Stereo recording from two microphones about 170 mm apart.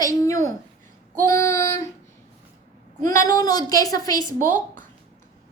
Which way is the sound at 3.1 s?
20° left (ahead or behind).